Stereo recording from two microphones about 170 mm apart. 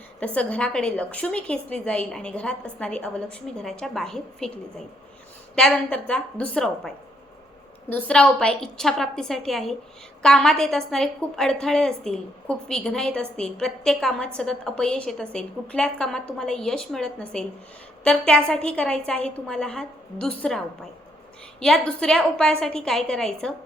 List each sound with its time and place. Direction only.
0.3 s a woman's voice: 5° left (ahead or behind)
5.5 s a woman's voice: 5° left (ahead or behind)
21.6 s a woman's voice: 5° left (ahead or behind)